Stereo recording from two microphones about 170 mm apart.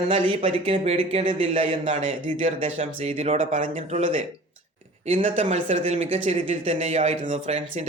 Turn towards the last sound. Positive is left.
turn(degrees=-40)  # may be behind; listen again after turning